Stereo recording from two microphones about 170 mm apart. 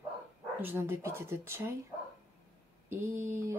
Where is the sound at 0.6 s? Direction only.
10° right (ahead or behind).